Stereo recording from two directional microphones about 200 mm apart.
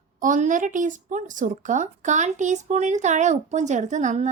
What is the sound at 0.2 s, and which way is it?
Speech, 40° right (ahead or behind).